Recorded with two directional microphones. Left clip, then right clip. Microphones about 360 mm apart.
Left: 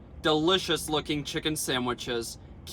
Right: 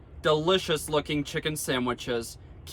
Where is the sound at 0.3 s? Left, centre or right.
Centre.